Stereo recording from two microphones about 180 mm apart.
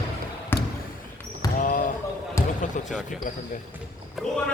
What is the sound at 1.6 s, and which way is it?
Speech, 50° left (ahead or behind).